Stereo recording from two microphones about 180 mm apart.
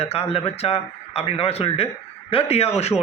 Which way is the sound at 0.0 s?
30° left (ahead or behind).